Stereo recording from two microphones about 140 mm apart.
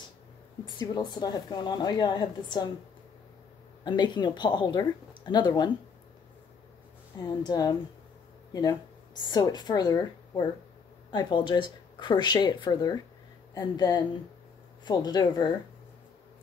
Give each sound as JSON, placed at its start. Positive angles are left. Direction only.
{"t": 0.7, "sound": "a woman's voice", "side_deg": 30}
{"t": 3.8, "sound": "speech", "side_deg": 30}
{"t": 7.4, "sound": "a woman's voice", "side_deg": 30}